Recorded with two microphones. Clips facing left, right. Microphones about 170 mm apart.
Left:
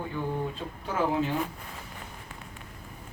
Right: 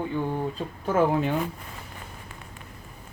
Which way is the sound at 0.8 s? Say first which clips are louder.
Right 5 dB; 50° right (ahead or behind).